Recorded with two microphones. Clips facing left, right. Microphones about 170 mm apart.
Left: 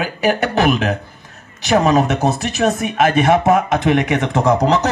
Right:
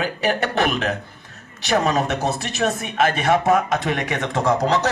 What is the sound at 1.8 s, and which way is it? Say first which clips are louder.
Speech: left 6 dB; 50° left (ahead or behind).